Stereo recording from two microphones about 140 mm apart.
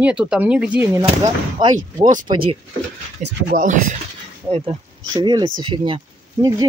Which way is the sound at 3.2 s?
60° right (ahead or behind).